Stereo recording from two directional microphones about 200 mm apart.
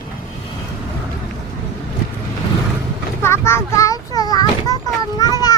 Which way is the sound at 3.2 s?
10° left (ahead or behind).